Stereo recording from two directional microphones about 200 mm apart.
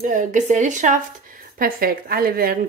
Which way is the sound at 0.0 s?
40° right (ahead or behind).